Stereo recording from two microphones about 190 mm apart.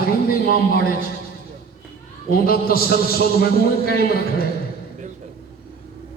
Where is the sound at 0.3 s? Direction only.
50° left (ahead or behind).